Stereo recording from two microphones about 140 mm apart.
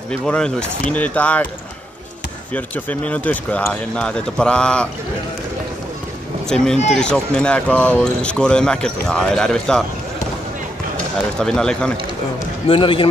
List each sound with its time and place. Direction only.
0.1 s speech: 5° left (ahead or behind)
2.5 s speech: 10° left (ahead or behind)
6.5 s speech: 5° left (ahead or behind)
11.3 s speech: 5° left (ahead or behind)
12.6 s speech: 40° left (ahead or behind)